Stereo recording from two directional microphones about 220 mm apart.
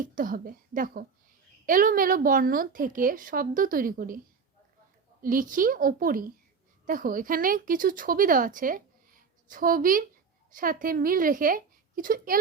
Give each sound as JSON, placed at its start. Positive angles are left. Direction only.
{"t": 0.0, "sound": "speech", "side_deg": -35}
{"t": 5.2, "sound": "speech", "side_deg": -40}